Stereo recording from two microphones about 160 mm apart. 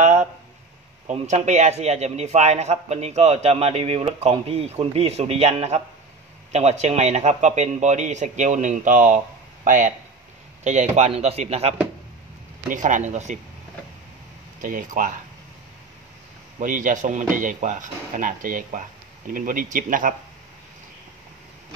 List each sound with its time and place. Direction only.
0.0 s a sound: 45° right (ahead or behind)
1.0 s a man's voice: 45° right (ahead or behind)
12.6 s a man's voice: 50° right (ahead or behind)
14.6 s speech: 55° right (ahead or behind)
16.5 s a man's voice: 55° right (ahead or behind)